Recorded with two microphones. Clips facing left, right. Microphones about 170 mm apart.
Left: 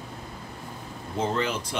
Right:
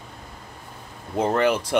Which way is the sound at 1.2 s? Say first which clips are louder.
Right 7 dB; 60° right (ahead or behind).